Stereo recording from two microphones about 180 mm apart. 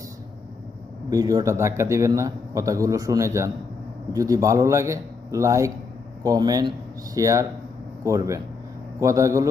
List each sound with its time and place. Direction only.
1.1 s a man's voice: 20° right (ahead or behind)